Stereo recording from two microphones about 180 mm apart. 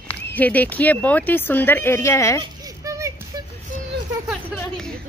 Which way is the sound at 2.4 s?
20° right (ahead or behind).